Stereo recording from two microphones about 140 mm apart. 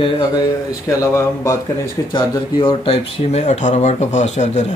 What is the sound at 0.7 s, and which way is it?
Speech, 25° left (ahead or behind).